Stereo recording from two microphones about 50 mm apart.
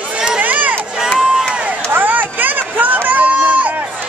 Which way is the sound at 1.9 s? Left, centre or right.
Right.